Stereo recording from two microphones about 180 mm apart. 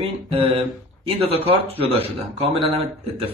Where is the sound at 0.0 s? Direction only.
30° right (ahead or behind).